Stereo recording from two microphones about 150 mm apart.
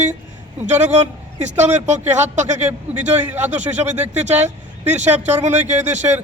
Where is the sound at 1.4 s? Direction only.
10° right (ahead or behind).